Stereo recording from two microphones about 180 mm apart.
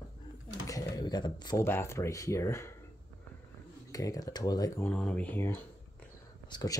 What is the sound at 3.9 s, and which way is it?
Speech, 20° left (ahead or behind).